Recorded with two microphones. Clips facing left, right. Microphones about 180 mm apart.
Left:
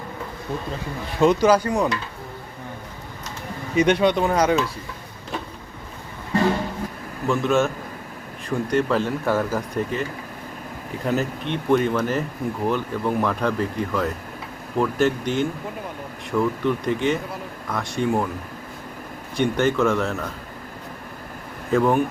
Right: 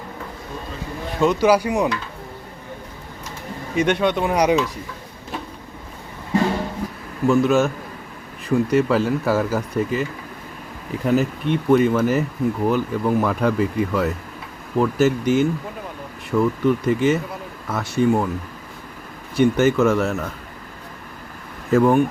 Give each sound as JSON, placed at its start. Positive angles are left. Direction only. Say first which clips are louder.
{"t": 1.2, "sound": "speech", "louder": "even", "side_deg": 0}
{"t": 3.8, "sound": "speech", "louder": "left 1 dB", "side_deg": 0}
{"t": 4.4, "sound": "speech", "louder": "right 2 dB", "side_deg": -15}
{"t": 7.3, "sound": "speech", "louder": "right 4 dB", "side_deg": 0}
{"t": 11.0, "sound": "speech", "louder": "right 5 dB", "side_deg": -5}
{"t": 19.4, "sound": "speech", "louder": "right 4 dB", "side_deg": -5}
{"t": 21.7, "sound": "speech", "louder": "right 3 dB", "side_deg": 0}